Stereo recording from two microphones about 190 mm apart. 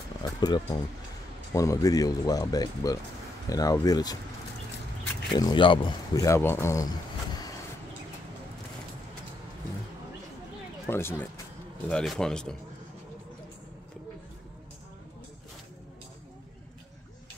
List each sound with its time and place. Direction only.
0.2 s music: 20° left (ahead or behind)
1.5 s speech: 15° left (ahead or behind)
5.3 s speech: 25° left (ahead or behind)
10.9 s speech: 10° left (ahead or behind)